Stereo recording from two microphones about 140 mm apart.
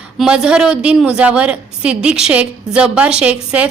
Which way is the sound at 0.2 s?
5° right (ahead or behind).